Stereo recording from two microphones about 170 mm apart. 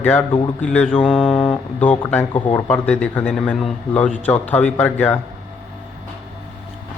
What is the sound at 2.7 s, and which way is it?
Mantra, 5° left (ahead or behind).